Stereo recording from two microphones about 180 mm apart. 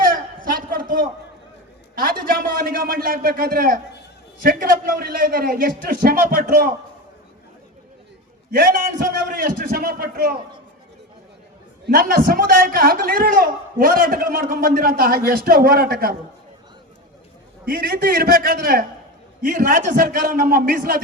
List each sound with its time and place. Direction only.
0.0 s a sound: 50° right (ahead or behind)
2.0 s a man's voice: 55° right (ahead or behind)
8.5 s a man's voice: 50° right (ahead or behind)
11.9 s a man's voice: 50° right (ahead or behind)
17.7 s a man's voice: 55° right (ahead or behind)